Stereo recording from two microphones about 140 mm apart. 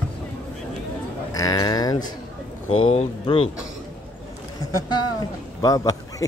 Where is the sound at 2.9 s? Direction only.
40° left (ahead or behind).